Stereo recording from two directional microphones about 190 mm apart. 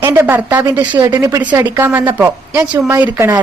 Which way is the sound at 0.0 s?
10° right (ahead or behind).